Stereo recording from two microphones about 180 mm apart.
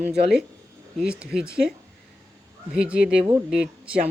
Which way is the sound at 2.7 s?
5° right (ahead or behind).